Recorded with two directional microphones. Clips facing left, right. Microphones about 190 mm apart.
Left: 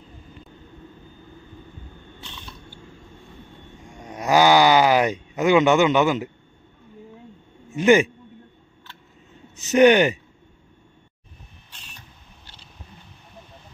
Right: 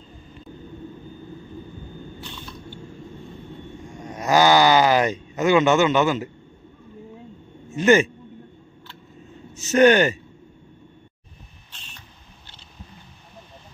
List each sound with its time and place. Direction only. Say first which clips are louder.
4.0 s a sound: even; 10° left (ahead or behind)
7.7 s speech: left 1 dB; 15° left (ahead or behind)
9.6 s speech: left 1 dB; 15° left (ahead or behind)